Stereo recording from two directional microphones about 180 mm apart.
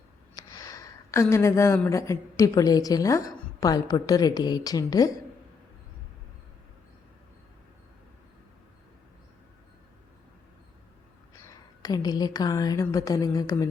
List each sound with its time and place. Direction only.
0.3 s speech: 20° left (ahead or behind)
11.8 s a woman's voice: 20° left (ahead or behind)